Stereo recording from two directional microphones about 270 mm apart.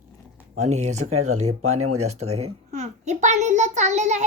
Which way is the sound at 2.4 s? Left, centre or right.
Right.